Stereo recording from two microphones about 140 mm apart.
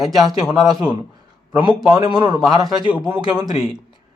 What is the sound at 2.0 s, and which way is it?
Speech, 30° right (ahead or behind).